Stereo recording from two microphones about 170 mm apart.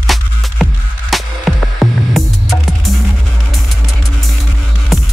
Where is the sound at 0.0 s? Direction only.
Centre (ahead or behind).